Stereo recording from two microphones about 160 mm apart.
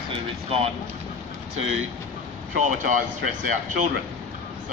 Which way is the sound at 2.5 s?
55° right (ahead or behind).